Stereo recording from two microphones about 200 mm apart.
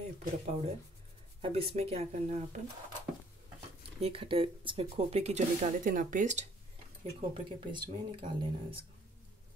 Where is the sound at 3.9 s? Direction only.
30° right (ahead or behind).